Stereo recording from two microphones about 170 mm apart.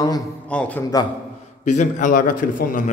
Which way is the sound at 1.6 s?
45° left (ahead or behind).